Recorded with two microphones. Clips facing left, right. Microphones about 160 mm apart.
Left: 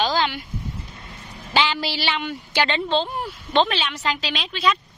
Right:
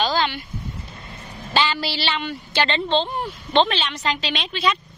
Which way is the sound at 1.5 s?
15° left (ahead or behind).